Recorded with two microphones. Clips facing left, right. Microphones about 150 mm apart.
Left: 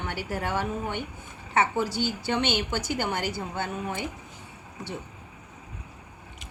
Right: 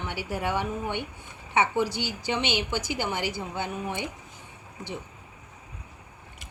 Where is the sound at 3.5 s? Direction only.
15° right (ahead or behind).